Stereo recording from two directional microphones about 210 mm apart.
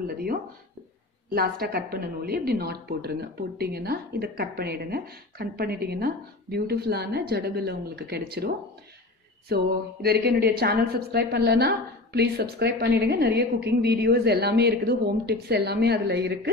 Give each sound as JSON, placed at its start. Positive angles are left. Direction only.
{"t": 0.0, "sound": "a sound", "side_deg": -45}
{"t": 1.3, "sound": "a woman's voice", "side_deg": -45}
{"t": 9.5, "sound": "a woman's voice", "side_deg": -50}